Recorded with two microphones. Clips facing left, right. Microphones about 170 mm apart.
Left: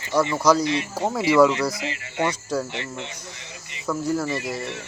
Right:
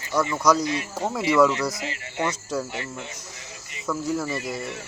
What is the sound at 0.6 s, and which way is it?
Speech, 45° right (ahead or behind).